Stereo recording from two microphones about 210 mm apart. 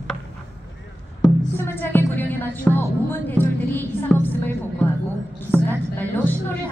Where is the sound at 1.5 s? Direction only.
10° left (ahead or behind).